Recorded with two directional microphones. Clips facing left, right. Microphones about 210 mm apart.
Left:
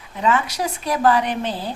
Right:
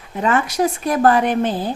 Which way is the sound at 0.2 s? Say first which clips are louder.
Right 3 dB; 50° right (ahead or behind).